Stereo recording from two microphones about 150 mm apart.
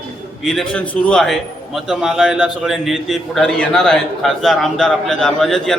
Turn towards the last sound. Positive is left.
turn(degrees=0)  # may be behind; listen again after turning